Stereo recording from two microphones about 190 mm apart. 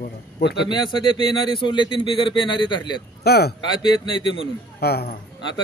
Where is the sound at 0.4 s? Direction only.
60° left (ahead or behind).